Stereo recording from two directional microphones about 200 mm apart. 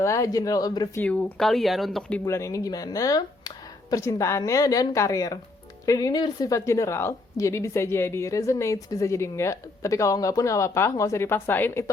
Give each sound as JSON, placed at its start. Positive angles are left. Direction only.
{"t": 0.0, "sound": "a woman's voice", "side_deg": 15}
{"t": 1.0, "sound": "a woman's voice", "side_deg": 5}